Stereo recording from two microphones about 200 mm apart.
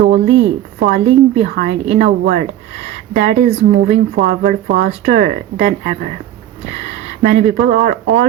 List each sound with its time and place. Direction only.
0.3 s speech: 80° right
0.8 s speech: 35° right (ahead or behind)
6.8 s a sound: 35° right (ahead or behind)
7.6 s speech: 40° right (ahead or behind)